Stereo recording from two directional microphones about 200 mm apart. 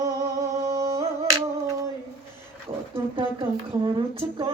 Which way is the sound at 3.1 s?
25° right (ahead or behind).